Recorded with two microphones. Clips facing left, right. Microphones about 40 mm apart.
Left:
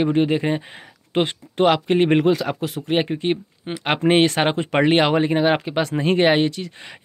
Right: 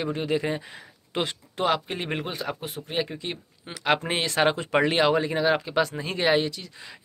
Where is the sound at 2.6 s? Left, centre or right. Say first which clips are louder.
Left 10 dB; left.